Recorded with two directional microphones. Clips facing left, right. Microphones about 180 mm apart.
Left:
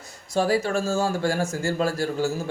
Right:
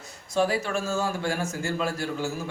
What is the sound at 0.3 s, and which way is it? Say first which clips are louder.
A man's voice: left 3 dB; 35° left (ahead or behind).